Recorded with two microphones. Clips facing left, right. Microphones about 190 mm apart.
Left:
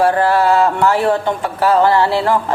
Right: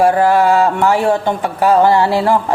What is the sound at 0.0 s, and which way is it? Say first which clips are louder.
A woman's voice: right 2 dB; 15° right (ahead or behind).